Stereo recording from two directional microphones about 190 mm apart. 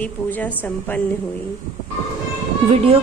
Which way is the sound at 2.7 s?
30° right (ahead or behind).